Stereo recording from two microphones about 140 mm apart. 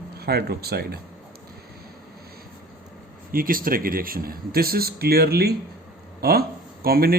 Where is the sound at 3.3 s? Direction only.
90° right.